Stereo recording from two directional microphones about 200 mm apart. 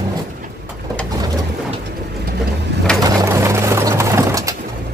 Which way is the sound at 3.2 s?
15° right (ahead or behind).